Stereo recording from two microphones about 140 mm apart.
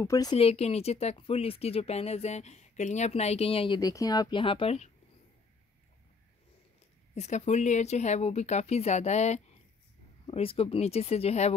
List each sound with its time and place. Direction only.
0.0 s speech: 25° left (ahead or behind)
0.4 s speech: 45° left (ahead or behind)
3.8 s speech: 25° left (ahead or behind); by 4.9 s 50° left (ahead or behind)
7.2 s speech: 55° left (ahead or behind)
10.2 s speech: 40° left (ahead or behind)